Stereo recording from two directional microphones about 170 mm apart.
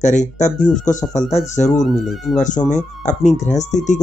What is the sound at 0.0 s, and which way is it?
Speech, 45° left (ahead or behind).